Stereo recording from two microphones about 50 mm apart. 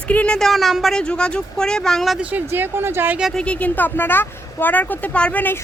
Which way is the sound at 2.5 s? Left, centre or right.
Right.